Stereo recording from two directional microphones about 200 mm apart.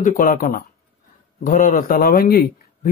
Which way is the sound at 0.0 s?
45° left (ahead or behind).